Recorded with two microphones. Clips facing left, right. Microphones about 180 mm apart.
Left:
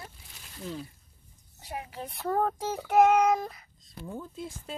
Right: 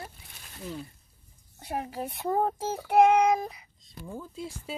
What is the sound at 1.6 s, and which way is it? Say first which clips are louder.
Speech: right 5 dB; 45° right (ahead or behind).